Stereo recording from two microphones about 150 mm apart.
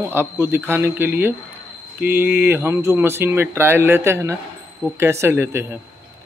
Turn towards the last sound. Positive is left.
turn(degrees=-15)  # may be behind; listen again after turning